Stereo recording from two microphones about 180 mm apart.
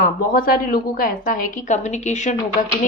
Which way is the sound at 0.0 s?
55° left (ahead or behind).